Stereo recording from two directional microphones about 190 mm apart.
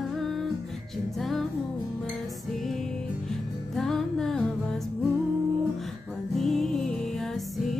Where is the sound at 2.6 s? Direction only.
Centre (ahead or behind).